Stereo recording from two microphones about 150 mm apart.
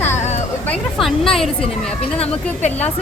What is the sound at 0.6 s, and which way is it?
Speech, 5° left (ahead or behind).